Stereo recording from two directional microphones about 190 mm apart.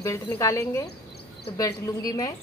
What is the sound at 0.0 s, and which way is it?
Speech, 15° left (ahead or behind).